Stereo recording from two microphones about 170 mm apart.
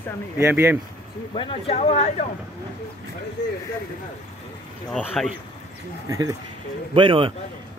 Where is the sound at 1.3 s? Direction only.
35° left (ahead or behind).